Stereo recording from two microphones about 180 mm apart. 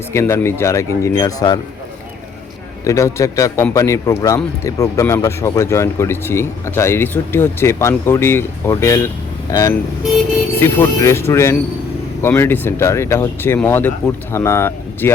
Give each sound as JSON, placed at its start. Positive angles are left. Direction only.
{"t": 0.1, "sound": "speech", "side_deg": 15}
{"t": 2.8, "sound": "speech", "side_deg": 15}